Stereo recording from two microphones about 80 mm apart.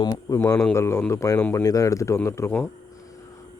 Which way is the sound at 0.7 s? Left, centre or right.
Left.